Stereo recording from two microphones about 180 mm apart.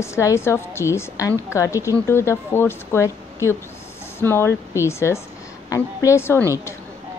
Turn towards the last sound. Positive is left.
turn(degrees=15)  # may be behind; listen again after turning